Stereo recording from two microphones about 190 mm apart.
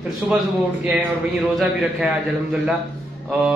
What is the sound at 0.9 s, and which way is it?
A man's voice, 10° right (ahead or behind).